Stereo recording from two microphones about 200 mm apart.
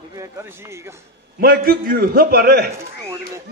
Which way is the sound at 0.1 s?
15° right (ahead or behind).